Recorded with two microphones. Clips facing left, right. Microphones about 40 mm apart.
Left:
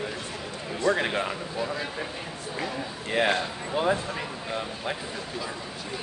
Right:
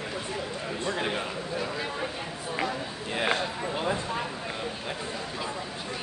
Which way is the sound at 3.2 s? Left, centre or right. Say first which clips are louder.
Right 2 dB; centre.